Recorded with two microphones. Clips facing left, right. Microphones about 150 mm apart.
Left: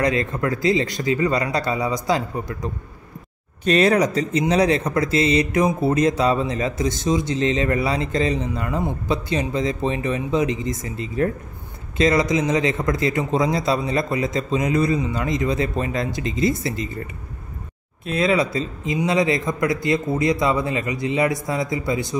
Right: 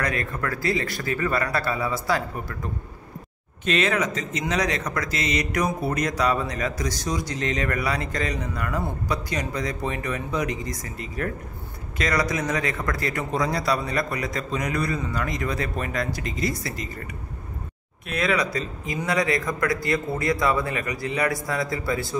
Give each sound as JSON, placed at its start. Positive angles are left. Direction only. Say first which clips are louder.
{"t": 0.0, "sound": "speech", "louder": "left 6 dB", "side_deg": 20}
{"t": 3.6, "sound": "speech", "louder": "left 6 dB", "side_deg": 35}